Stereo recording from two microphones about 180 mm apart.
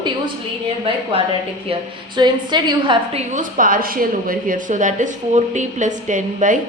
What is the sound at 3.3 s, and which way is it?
A woman's voice, 50° right (ahead or behind).